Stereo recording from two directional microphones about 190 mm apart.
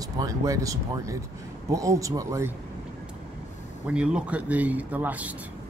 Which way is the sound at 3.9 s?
5° right (ahead or behind).